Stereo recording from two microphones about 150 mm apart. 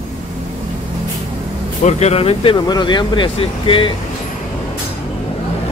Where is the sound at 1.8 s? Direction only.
45° left (ahead or behind).